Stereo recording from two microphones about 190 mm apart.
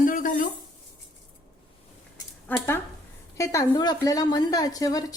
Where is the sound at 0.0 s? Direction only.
45° left (ahead or behind).